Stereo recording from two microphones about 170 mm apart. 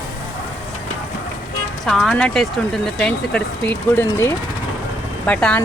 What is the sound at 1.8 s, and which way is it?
Speech, centre (ahead or behind).